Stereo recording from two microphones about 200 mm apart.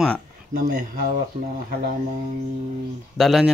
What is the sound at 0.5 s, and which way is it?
Speech, 45° right (ahead or behind).